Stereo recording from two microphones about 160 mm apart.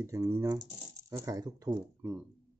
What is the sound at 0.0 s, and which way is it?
Speech, 20° right (ahead or behind).